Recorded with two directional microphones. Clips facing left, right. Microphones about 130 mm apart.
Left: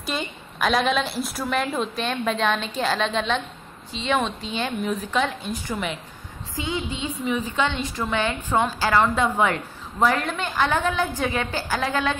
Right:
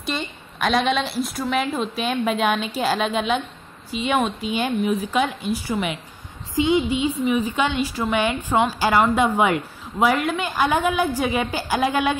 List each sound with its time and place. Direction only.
0.0 s a woman's voice: centre (ahead or behind); by 12.2 s 15° right (ahead or behind)